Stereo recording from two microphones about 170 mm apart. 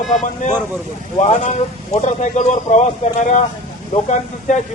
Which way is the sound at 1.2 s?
45° left (ahead or behind).